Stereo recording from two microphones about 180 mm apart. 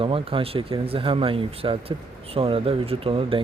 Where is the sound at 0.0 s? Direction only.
30° right (ahead or behind).